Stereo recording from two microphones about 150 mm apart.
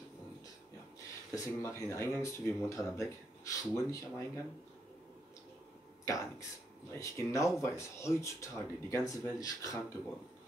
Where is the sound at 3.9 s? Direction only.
20° left (ahead or behind).